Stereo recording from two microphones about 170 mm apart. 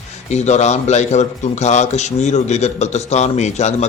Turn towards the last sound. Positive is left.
turn(degrees=40)  # may be behind; listen again after turning